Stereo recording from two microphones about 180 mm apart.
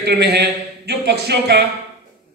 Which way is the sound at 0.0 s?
65° right (ahead or behind).